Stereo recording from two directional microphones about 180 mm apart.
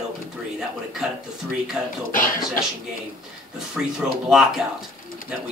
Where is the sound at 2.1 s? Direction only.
50° left (ahead or behind).